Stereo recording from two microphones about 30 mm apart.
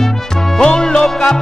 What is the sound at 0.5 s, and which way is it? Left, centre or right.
Music, left.